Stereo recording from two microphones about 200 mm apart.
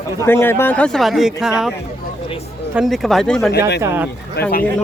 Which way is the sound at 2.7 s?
Centre (ahead or behind).